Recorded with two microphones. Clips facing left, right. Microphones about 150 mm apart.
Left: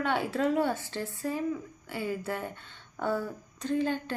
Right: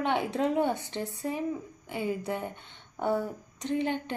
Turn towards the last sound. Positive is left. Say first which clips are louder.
# even
turn(degrees=-20)  # may be behind; listen again after turning